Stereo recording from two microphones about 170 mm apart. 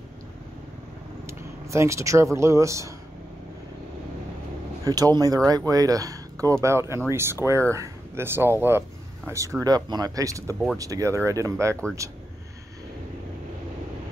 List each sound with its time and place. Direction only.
1.2 s speech: 15° right (ahead or behind)
4.8 s speech: 20° right (ahead or behind)